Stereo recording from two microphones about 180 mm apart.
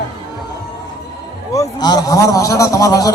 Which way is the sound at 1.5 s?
20° left (ahead or behind).